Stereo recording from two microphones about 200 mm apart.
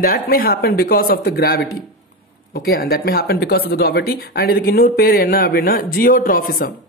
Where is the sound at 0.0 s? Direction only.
45° left (ahead or behind).